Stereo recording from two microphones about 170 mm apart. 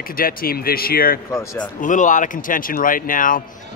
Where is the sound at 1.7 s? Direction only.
50° left (ahead or behind).